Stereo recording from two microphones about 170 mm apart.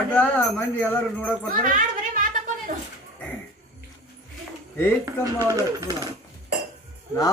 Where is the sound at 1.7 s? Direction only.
50° right (ahead or behind).